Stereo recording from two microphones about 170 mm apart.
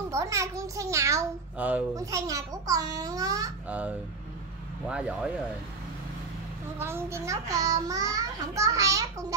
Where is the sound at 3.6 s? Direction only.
10° right (ahead or behind).